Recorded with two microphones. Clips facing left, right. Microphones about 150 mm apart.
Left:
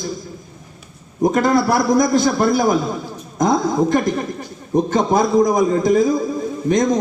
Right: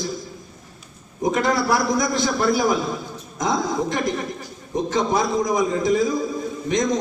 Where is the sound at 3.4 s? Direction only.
50° left (ahead or behind).